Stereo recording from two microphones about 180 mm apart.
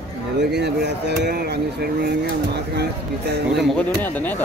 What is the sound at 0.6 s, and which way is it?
Speech, 70° right (ahead or behind).